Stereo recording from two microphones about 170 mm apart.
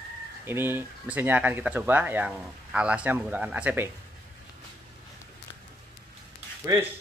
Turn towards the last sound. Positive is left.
turn(degrees=-20)  # may be behind; listen again after turning